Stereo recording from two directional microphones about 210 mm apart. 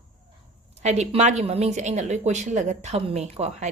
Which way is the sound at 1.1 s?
35° right (ahead or behind).